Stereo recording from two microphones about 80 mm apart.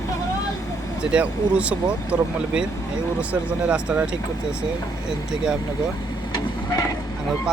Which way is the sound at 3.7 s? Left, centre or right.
Centre.